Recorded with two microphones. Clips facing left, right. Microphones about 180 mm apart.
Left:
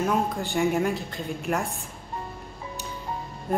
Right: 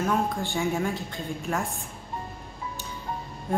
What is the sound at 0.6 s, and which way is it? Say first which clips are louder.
A woman's voice: left 5 dB; centre (ahead or behind).